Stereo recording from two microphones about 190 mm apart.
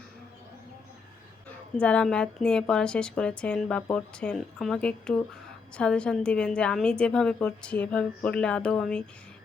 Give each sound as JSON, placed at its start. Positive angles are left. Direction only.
{"t": 1.7, "sound": "a woman's voice", "side_deg": 5}